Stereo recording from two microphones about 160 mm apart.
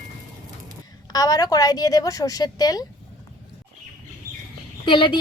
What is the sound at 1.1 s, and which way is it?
A woman's voice, 25° left (ahead or behind).